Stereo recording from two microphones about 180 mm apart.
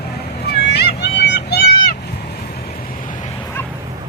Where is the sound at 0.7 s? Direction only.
65° left (ahead or behind).